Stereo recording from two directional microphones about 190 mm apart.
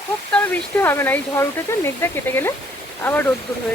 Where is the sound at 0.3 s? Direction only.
10° left (ahead or behind).